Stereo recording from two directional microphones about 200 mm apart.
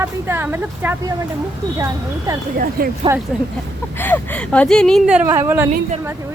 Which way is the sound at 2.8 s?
45° right (ahead or behind).